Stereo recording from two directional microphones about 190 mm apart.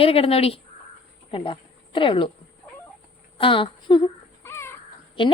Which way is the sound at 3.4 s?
25° left (ahead or behind).